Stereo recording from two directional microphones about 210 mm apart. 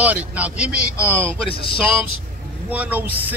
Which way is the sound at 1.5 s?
25° left (ahead or behind).